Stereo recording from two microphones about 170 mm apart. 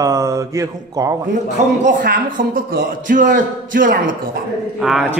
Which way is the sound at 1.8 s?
50° right (ahead or behind).